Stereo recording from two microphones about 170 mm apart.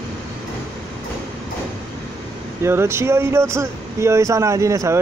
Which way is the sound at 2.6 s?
15° right (ahead or behind).